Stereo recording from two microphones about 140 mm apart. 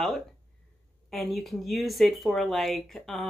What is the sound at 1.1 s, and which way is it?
Speech, centre (ahead or behind).